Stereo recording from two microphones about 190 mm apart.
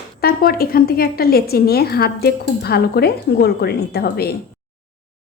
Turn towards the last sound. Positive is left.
turn(degrees=55)  # may be behind; listen again after turning